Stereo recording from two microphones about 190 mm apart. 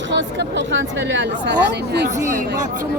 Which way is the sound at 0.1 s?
70° right (ahead or behind).